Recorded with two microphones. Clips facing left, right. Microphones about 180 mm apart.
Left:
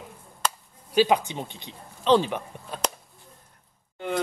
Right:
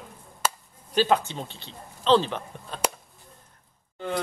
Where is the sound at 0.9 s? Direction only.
15° left (ahead or behind).